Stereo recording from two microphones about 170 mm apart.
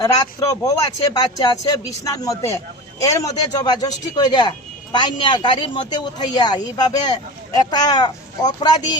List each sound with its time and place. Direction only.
0.0 s speech: 20° left (ahead or behind)